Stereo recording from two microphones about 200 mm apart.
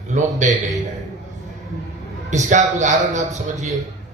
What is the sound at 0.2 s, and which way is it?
Speech, 35° right (ahead or behind).